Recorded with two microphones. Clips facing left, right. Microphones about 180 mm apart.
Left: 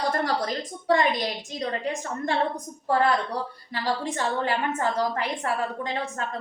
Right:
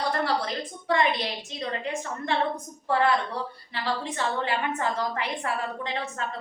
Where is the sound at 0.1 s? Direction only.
45° left (ahead or behind).